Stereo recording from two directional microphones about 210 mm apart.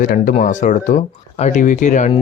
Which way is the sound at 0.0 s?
35° left (ahead or behind).